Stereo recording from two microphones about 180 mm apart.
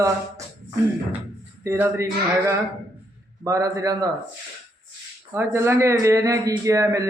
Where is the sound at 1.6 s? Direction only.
15° right (ahead or behind).